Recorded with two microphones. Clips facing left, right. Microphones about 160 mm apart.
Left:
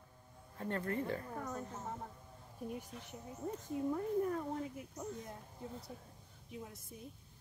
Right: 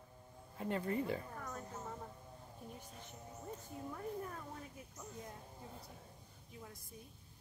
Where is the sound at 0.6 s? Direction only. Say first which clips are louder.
Even; 15° right (ahead or behind).